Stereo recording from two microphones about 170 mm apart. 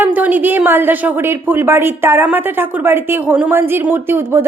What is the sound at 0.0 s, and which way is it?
A woman's voice, 10° right (ahead or behind).